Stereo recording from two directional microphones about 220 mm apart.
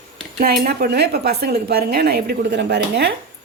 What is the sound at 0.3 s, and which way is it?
Speech, 45° right (ahead or behind).